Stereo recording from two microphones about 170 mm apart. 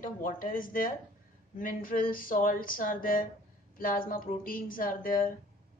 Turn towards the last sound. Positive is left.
turn(degrees=55)  # may be behind; listen again after turning